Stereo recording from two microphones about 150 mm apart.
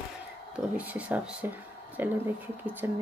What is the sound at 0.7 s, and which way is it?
Speech, 10° right (ahead or behind).